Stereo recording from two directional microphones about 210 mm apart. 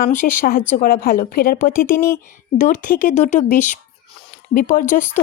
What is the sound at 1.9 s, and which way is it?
Speech, 10° left (ahead or behind).